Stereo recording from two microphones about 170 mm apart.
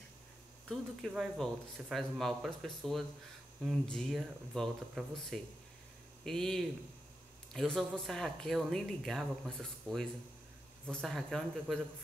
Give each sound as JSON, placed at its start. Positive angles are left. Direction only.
{"t": 0.7, "sound": "speech", "side_deg": 0}